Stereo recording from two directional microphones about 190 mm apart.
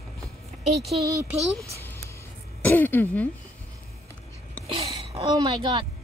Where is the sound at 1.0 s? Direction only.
15° right (ahead or behind).